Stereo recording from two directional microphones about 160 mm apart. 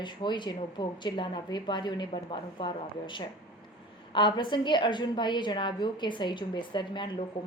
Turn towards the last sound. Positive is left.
turn(degrees=30)  # may be behind; listen again after turning